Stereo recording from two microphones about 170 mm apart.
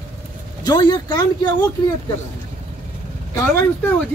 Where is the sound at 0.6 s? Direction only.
25° left (ahead or behind).